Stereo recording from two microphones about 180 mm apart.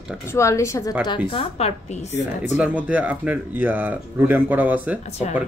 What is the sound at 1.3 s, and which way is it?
A woman's voice, 35° left (ahead or behind).